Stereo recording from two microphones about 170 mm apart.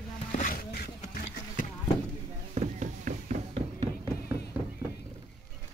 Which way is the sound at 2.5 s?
45° right (ahead or behind).